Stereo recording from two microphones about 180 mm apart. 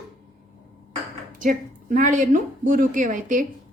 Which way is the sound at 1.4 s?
45° right (ahead or behind).